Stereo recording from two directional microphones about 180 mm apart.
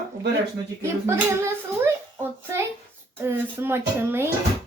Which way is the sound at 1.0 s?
15° right (ahead or behind).